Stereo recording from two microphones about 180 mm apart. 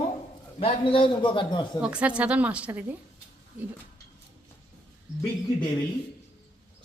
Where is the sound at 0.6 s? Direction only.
30° left (ahead or behind).